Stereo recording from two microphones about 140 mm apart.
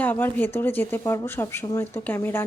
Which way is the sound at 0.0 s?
10° left (ahead or behind).